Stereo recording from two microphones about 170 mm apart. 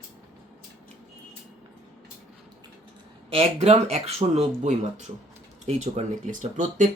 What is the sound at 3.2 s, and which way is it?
Speech, 35° right (ahead or behind).